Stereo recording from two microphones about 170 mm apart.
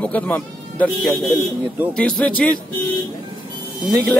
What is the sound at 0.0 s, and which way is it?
Speech, 10° left (ahead or behind).